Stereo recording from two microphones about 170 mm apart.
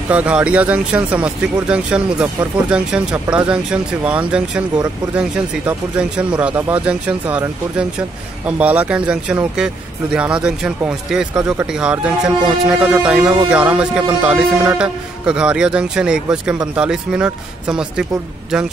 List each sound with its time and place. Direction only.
0.1 s a man's voice: 5° right (ahead or behind)